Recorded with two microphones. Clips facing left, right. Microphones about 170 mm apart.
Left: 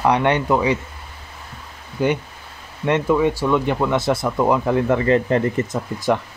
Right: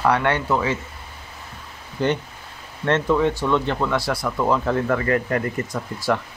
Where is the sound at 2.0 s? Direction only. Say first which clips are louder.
Left 2 dB; 10° left (ahead or behind).